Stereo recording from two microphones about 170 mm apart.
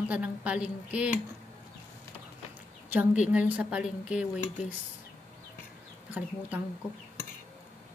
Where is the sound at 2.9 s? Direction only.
10° right (ahead or behind).